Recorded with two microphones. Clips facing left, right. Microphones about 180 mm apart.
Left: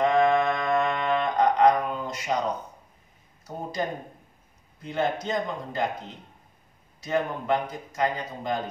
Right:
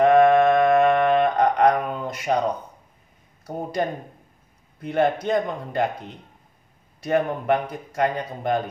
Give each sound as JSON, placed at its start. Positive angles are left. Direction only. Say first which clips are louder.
{"t": 0.0, "sound": "mantra", "louder": "right 6 dB", "side_deg": -60}
{"t": 4.8, "sound": "a man's voice", "louder": "right 6 dB", "side_deg": -60}